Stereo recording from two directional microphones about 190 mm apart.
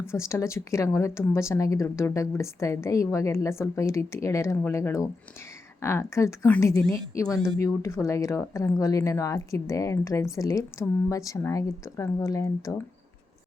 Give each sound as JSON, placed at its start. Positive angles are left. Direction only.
{"t": 0.0, "sound": "speech", "side_deg": 15}